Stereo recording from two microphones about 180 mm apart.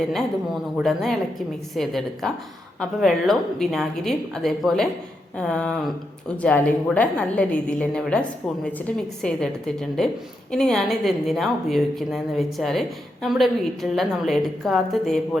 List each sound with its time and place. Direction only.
0.0 s speech: centre (ahead or behind)